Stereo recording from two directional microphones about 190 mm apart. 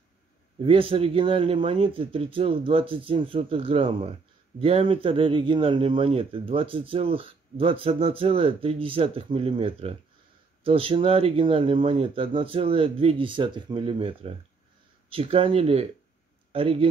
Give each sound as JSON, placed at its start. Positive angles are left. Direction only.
{"t": 0.6, "sound": "speech", "side_deg": -30}